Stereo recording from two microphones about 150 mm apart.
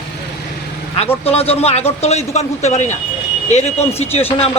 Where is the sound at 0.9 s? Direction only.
45° left (ahead or behind).